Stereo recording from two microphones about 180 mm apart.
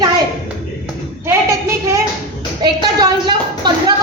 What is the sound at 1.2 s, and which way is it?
A woman's voice, 15° right (ahead or behind).